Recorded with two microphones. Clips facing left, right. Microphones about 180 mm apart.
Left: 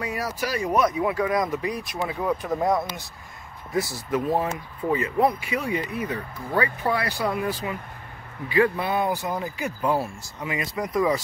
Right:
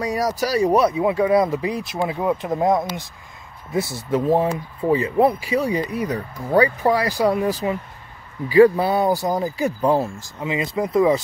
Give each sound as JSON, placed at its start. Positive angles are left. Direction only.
{"t": 0.0, "sound": "speech", "side_deg": -40}
{"t": 9.9, "sound": "speech", "side_deg": -25}